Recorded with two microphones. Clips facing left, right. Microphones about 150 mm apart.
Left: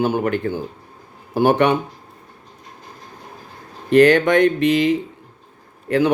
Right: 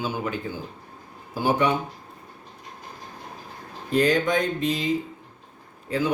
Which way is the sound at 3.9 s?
70° left (ahead or behind).